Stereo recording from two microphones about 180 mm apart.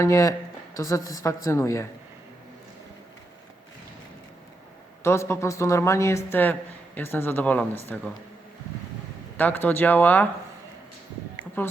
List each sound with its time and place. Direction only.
0.0 s speech: 15° left (ahead or behind)
5.0 s speech: 15° left (ahead or behind)
9.4 s speech: 10° left (ahead or behind)